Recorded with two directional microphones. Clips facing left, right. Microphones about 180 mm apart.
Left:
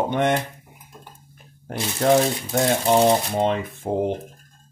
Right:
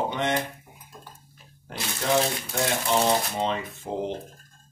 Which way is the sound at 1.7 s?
50° left (ahead or behind).